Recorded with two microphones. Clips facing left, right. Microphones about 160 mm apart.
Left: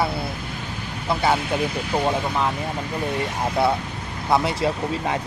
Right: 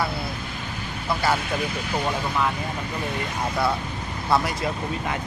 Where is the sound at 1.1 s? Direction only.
20° left (ahead or behind).